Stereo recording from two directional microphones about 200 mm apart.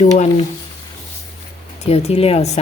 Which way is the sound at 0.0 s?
35° left (ahead or behind).